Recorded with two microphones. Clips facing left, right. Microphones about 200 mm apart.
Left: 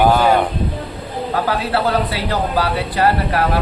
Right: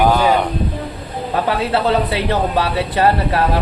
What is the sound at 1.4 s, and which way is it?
Speech, 20° right (ahead or behind).